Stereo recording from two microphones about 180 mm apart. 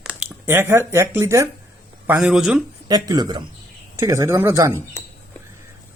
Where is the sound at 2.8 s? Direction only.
20° right (ahead or behind).